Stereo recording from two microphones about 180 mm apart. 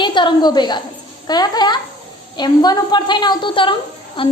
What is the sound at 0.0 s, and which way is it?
A woman's voice, 25° left (ahead or behind).